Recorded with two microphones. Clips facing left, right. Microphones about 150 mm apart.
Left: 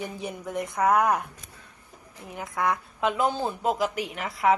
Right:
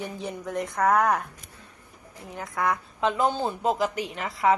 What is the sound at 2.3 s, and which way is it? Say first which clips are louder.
A woman's voice: even; 15° left (ahead or behind).